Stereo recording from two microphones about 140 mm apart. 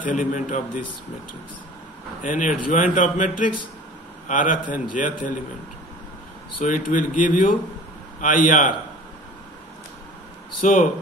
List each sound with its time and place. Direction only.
0.0 s a man's voice: 65° left (ahead or behind)
2.2 s speech: 70° left (ahead or behind)
6.6 s speech: 70° left (ahead or behind)
10.6 s a man's voice: 65° left (ahead or behind)